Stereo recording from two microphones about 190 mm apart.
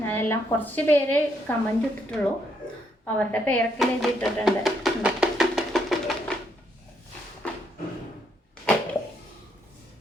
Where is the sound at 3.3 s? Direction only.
5° left (ahead or behind).